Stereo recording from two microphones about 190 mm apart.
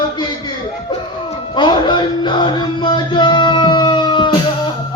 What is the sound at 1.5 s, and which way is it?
Music, 25° left (ahead or behind).